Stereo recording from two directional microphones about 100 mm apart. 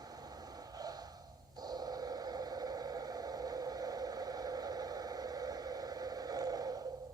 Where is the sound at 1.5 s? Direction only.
40° right (ahead or behind).